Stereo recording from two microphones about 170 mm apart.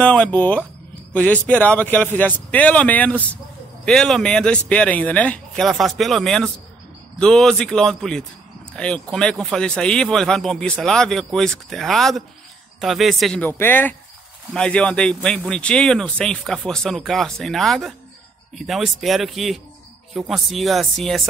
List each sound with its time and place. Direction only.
0.0 s speech: 5° left (ahead or behind)